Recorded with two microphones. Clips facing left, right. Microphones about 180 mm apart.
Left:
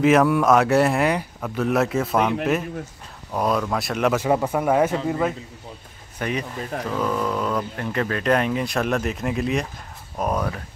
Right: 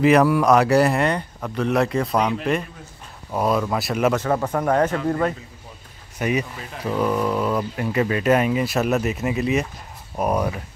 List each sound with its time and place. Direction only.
0.0 s speech: centre (ahead or behind)
3.3 s speech: centre (ahead or behind)
4.2 s speech: 10° left (ahead or behind)
6.1 s speech: 10° right (ahead or behind)